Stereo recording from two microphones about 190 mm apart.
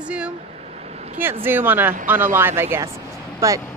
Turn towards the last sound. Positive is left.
turn(degrees=-15)  # may be behind; listen again after turning